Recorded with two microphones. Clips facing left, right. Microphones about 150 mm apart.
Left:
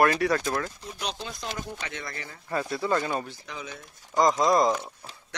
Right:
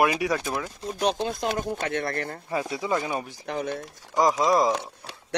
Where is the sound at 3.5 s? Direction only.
60° right (ahead or behind).